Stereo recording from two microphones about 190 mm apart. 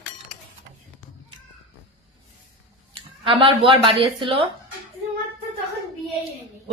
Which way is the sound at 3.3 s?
25° right (ahead or behind).